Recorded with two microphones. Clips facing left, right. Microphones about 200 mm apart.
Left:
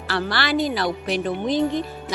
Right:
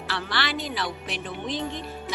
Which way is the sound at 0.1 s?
40° left (ahead or behind).